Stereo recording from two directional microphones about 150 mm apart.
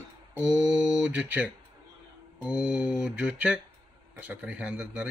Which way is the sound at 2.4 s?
5° right (ahead or behind).